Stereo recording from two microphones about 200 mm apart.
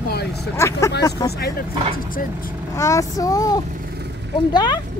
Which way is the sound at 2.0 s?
45° left (ahead or behind).